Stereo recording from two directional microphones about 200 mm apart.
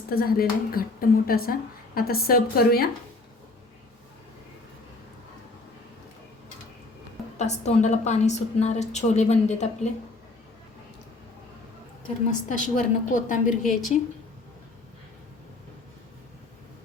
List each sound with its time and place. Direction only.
0.1 s a woman's voice: 50° left (ahead or behind)
7.3 s a woman's voice: 35° left (ahead or behind)
12.3 s a woman's voice: 40° left (ahead or behind)
13.6 s a woman's voice: centre (ahead or behind)